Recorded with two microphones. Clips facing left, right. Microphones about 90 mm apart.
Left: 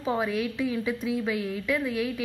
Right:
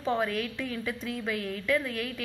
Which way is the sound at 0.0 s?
5° left (ahead or behind).